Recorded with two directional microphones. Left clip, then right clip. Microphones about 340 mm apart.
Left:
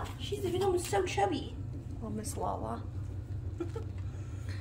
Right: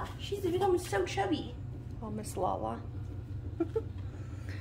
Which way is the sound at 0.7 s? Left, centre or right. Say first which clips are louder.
Left 2 dB; centre.